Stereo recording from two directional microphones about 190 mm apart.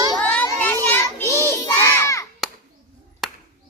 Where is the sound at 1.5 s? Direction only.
15° left (ahead or behind).